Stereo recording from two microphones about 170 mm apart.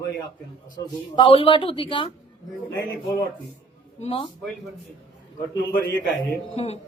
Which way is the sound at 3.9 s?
35° left (ahead or behind).